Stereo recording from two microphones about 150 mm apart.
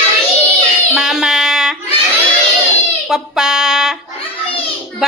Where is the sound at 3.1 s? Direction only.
5° right (ahead or behind).